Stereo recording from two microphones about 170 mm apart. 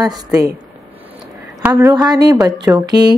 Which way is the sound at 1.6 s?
15° right (ahead or behind).